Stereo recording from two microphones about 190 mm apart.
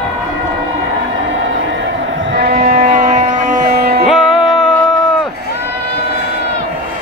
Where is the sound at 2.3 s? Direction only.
55° right (ahead or behind).